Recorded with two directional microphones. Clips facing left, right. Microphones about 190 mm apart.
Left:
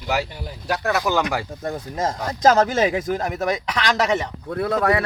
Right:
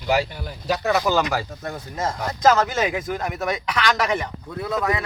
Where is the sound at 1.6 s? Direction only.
35° left (ahead or behind).